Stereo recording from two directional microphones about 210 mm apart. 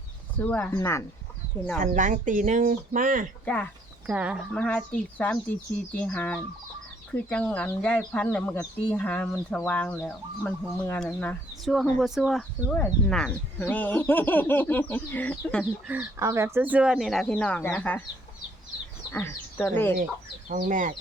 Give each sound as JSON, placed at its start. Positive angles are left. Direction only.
{"t": 0.3, "sound": "speech", "side_deg": 5}
{"t": 1.8, "sound": "speech", "side_deg": -35}
{"t": 3.4, "sound": "a sound", "side_deg": 5}
{"t": 4.1, "sound": "speech", "side_deg": -5}
{"t": 15.9, "sound": "speech", "side_deg": -10}
{"t": 19.1, "sound": "speech", "side_deg": 10}
{"t": 20.5, "sound": "speech", "side_deg": -40}